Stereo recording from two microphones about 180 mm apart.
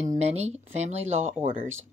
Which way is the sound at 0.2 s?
35° right (ahead or behind).